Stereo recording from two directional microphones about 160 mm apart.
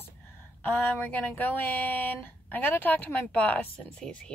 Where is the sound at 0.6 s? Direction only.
10° left (ahead or behind).